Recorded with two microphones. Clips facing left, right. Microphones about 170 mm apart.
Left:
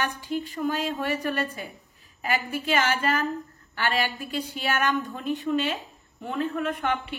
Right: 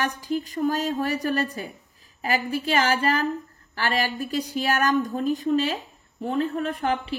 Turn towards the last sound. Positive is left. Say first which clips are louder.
# right 2 dB
turn(degrees=-35)  # may be behind; listen again after turning